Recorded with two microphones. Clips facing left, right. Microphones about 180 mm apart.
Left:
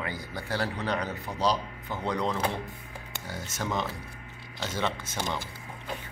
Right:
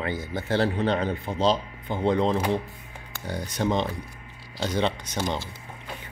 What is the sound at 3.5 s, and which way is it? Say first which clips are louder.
Speech: right 7 dB; 20° right (ahead or behind).